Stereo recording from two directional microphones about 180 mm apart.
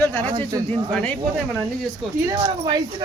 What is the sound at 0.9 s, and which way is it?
Speech, 10° left (ahead or behind).